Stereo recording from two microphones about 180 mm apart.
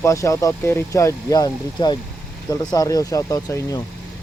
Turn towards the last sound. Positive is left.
turn(degrees=20)  # may be behind; listen again after turning